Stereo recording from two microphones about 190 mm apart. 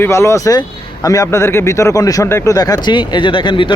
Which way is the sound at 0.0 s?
15° left (ahead or behind).